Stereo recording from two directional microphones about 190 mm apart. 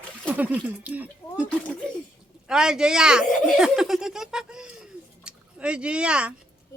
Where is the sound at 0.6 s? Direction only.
10° right (ahead or behind).